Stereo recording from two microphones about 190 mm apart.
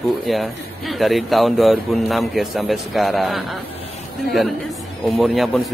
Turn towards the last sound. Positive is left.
turn(degrees=0)  # may be behind; listen again after turning